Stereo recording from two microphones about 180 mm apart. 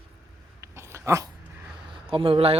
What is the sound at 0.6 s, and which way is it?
Dog, 15° right (ahead or behind).